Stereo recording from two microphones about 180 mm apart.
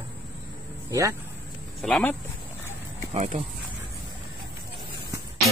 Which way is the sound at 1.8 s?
5° left (ahead or behind).